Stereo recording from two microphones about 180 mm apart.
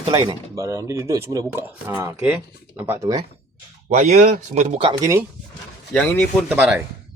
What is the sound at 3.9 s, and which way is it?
Speech, 40° right (ahead or behind).